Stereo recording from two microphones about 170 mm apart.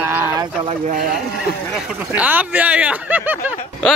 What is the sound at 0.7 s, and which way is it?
Speech, 55° right (ahead or behind).